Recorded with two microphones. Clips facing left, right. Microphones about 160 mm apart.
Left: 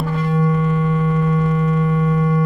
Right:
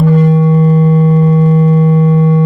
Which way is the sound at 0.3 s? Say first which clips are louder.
Right 8 dB; 30° right (ahead or behind).